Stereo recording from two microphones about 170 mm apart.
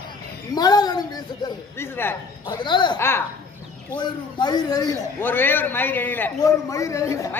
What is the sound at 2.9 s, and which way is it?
Speech, 15° left (ahead or behind).